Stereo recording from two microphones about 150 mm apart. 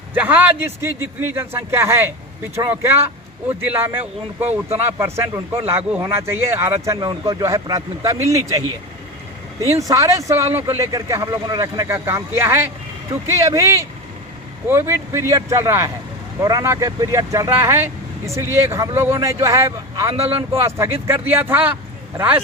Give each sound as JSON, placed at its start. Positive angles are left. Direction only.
{"t": 0.1, "sound": "speech", "side_deg": -10}
{"t": 9.9, "sound": "speech", "side_deg": -20}